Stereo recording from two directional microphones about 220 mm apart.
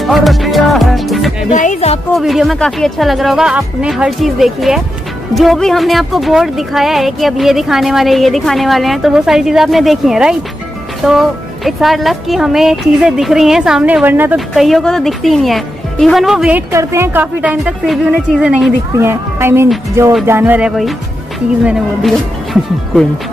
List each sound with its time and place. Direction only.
0.0 s music: centre (ahead or behind)
1.5 s speech: 35° left (ahead or behind)
2.1 s speech: centre (ahead or behind)